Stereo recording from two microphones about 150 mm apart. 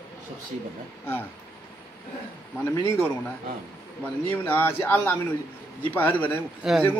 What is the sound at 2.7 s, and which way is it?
A man's voice, 15° left (ahead or behind).